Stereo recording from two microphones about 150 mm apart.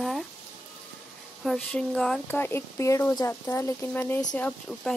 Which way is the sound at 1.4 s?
5° left (ahead or behind).